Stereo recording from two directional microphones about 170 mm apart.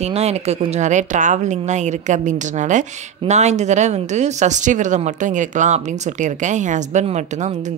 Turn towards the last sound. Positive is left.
turn(degrees=-40)  # may be behind; listen again after turning